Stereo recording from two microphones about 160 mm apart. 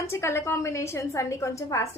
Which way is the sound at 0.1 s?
15° left (ahead or behind).